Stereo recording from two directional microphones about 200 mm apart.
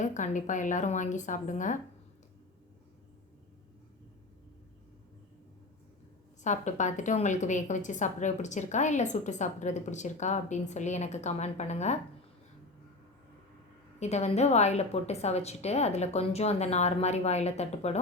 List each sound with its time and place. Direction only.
0.0 s a woman's voice: 40° left (ahead or behind)
6.4 s a woman's voice: 35° left (ahead or behind)
14.0 s a woman's voice: 35° left (ahead or behind)